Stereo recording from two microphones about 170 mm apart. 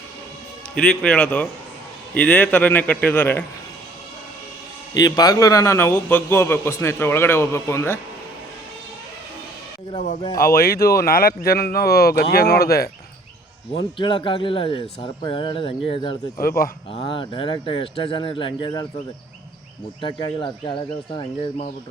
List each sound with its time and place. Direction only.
0.8 s a man's voice: 5° left (ahead or behind)
4.9 s a man's voice: 20° left (ahead or behind)
10.4 s speech: 60° left (ahead or behind)
13.7 s speech: 30° left (ahead or behind)
16.4 s speech: 60° left (ahead or behind)
16.9 s speech: 30° left (ahead or behind)
20.0 s speech: 30° left (ahead or behind)